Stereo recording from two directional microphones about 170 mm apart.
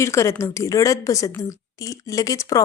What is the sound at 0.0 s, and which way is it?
A woman's voice, 15° left (ahead or behind).